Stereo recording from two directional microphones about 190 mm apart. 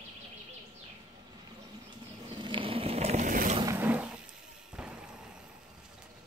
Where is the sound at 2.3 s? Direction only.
25° right (ahead or behind); by 3.6 s 40° right (ahead or behind).